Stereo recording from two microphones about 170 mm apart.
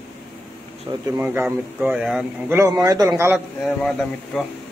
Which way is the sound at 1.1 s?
10° right (ahead or behind).